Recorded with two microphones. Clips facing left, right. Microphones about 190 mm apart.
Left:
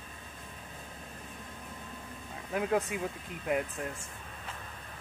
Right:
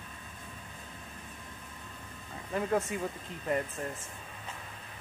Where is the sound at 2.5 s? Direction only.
10° left (ahead or behind).